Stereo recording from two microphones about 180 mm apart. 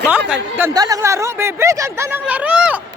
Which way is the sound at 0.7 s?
20° right (ahead or behind).